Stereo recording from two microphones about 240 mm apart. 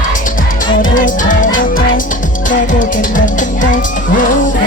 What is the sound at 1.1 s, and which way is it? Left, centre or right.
Music, left.